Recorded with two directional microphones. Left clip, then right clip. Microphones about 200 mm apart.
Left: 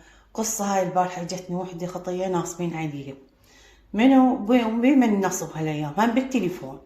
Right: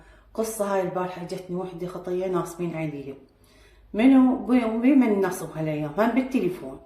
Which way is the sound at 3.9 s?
30° left (ahead or behind).